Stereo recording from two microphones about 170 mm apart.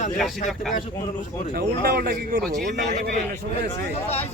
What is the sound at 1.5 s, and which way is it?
Speech, 65° right (ahead or behind).